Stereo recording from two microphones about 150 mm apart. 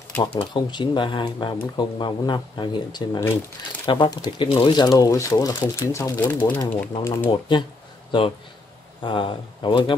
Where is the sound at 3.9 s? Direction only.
35° left (ahead or behind); by 6.6 s 10° left (ahead or behind).